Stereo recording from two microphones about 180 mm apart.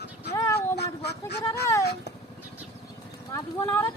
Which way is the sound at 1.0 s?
65° left (ahead or behind).